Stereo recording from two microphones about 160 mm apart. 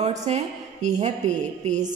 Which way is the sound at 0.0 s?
45° right (ahead or behind).